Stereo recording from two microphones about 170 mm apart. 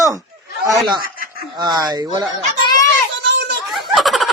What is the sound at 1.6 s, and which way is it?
Speech, 25° right (ahead or behind).